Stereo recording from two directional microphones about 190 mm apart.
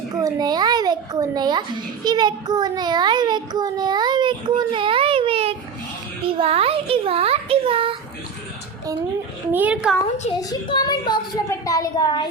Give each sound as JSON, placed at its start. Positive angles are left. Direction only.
{"t": 0.2, "sound": "a child's voice", "side_deg": -20}
{"t": 9.5, "sound": "a child's voice", "side_deg": -10}
{"t": 10.5, "sound": "a child's voice", "side_deg": 20}